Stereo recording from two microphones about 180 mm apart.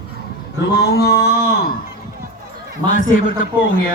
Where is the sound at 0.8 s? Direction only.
60° left (ahead or behind).